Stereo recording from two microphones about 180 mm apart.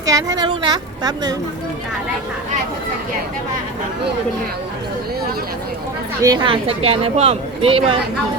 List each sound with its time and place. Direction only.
0.0 s a woman's voice: 20° right (ahead or behind)
6.2 s speech: 25° right (ahead or behind)